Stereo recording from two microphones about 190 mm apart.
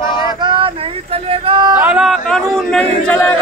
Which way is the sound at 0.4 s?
25° right (ahead or behind).